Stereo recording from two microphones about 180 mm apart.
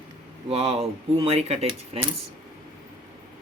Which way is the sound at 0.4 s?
35° right (ahead or behind).